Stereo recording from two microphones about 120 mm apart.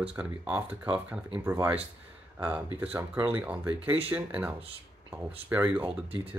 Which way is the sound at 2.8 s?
15° right (ahead or behind).